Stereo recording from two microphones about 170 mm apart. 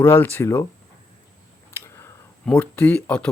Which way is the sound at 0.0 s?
15° left (ahead or behind).